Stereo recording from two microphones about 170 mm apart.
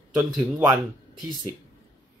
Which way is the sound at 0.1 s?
10° right (ahead or behind).